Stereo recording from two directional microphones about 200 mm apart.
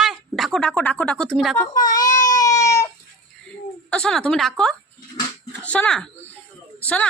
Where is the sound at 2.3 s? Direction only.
15° left (ahead or behind).